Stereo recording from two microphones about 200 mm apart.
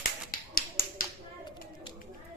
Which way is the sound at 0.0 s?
45° left (ahead or behind).